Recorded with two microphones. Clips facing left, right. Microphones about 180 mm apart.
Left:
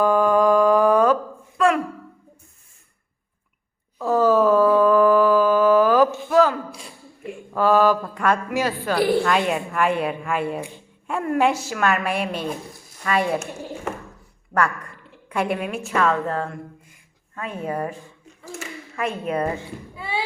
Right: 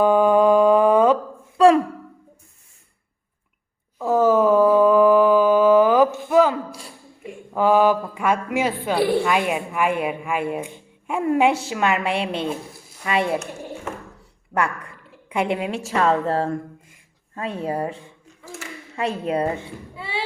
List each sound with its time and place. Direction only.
0.0 s mantra: 20° right (ahead or behind)
1.5 s a sound: 30° right (ahead or behind)
3.9 s a sound: 20° right (ahead or behind)
7.5 s a woman's voice: 15° right (ahead or behind)
9.2 s a woman's voice: 10° right (ahead or behind)
15.3 s a woman's voice: 20° right (ahead or behind)